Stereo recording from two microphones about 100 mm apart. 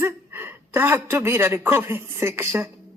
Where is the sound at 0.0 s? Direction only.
25° right (ahead or behind).